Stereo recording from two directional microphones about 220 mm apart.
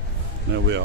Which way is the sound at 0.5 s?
55° right (ahead or behind).